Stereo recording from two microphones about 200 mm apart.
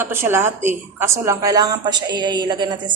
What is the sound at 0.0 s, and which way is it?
A woman's voice, 10° right (ahead or behind).